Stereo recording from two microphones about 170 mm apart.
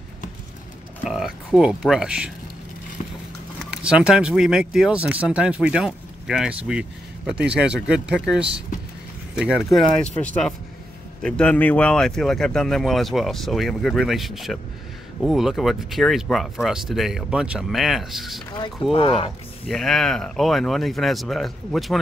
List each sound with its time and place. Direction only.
1.0 s speech: centre (ahead or behind)
3.7 s speech: 5° right (ahead or behind)
18.5 s speech: 30° left (ahead or behind)
19.7 s speech: centre (ahead or behind)